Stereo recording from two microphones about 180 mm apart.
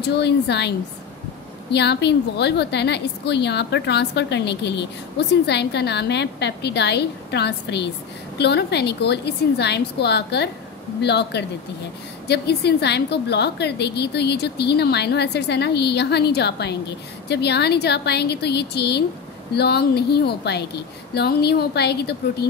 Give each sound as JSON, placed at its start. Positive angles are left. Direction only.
{"t": 0.1, "sound": "a woman's voice", "side_deg": 70}